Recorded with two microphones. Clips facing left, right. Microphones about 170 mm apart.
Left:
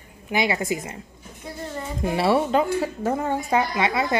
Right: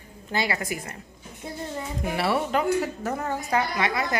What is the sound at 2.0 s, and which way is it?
Speech, 25° left (ahead or behind).